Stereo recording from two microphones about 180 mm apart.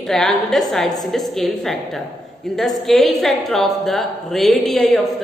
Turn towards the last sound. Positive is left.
turn(degrees=0)  # may be behind; listen again after turning